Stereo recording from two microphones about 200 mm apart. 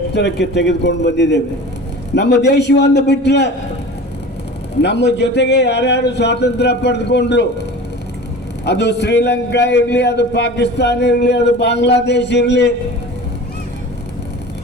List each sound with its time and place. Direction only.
0.1 s a man's voice: 60° left (ahead or behind)
4.8 s a man's voice: 60° left (ahead or behind)
8.6 s a man's voice: 60° left (ahead or behind)